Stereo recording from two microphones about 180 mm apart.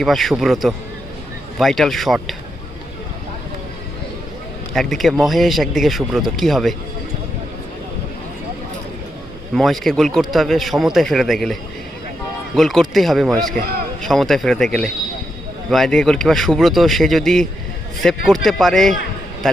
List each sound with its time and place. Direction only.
0.0 s speech: centre (ahead or behind)
4.7 s a man's voice: centre (ahead or behind)
9.6 s speech: centre (ahead or behind)
12.5 s speech: centre (ahead or behind)